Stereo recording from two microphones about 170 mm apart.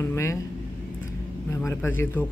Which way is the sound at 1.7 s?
10° left (ahead or behind).